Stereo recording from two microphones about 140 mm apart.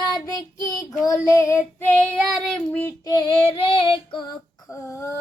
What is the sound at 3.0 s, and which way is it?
Child singing, 30° left (ahead or behind).